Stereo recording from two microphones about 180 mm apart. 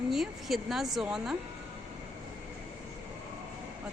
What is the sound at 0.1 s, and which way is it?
Speech, centre (ahead or behind).